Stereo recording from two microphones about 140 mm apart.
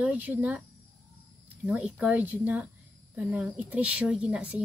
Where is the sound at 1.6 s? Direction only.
10° right (ahead or behind).